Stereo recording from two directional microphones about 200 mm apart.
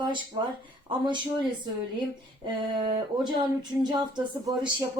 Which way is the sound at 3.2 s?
20° right (ahead or behind).